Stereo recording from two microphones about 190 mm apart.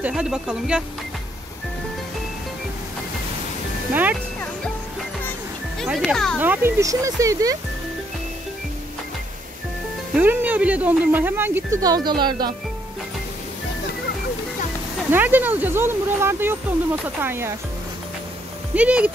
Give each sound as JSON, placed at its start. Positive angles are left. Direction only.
{"t": 0.0, "sound": "speech", "side_deg": -5}
{"t": 3.9, "sound": "speech", "side_deg": -10}
{"t": 5.8, "sound": "speech", "side_deg": 0}
{"t": 6.3, "sound": "speech", "side_deg": -10}
{"t": 10.1, "sound": "speech", "side_deg": -10}
{"t": 15.0, "sound": "speech", "side_deg": -10}
{"t": 18.8, "sound": "speech", "side_deg": -5}